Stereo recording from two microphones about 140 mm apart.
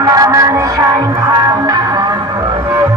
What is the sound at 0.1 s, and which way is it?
Music, 25° right (ahead or behind).